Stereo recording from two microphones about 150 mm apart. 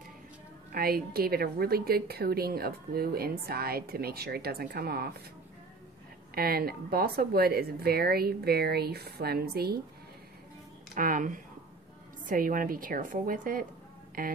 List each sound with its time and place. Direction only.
0.7 s a woman's voice: 85° right
6.3 s a woman's voice: 90° right
11.0 s a woman's voice: 65° right (ahead or behind)